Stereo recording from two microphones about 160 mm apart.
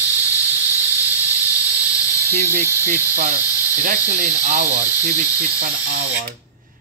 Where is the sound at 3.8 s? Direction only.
50° right (ahead or behind); by 6.0 s 70° right (ahead or behind).